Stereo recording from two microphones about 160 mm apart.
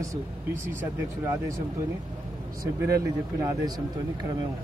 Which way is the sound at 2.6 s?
20° right (ahead or behind).